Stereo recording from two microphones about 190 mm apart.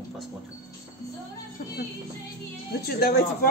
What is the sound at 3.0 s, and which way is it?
Speech, 55° left (ahead or behind).